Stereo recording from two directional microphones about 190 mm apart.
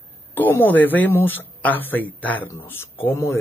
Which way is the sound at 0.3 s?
10° left (ahead or behind).